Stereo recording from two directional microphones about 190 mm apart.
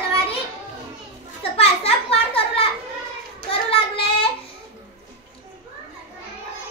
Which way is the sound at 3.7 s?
30° left (ahead or behind).